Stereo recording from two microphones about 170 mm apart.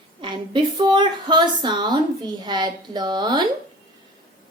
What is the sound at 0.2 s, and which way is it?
A woman's voice, 30° right (ahead or behind).